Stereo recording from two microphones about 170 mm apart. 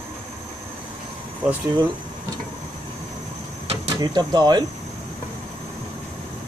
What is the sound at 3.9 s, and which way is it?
Speech, 25° right (ahead or behind).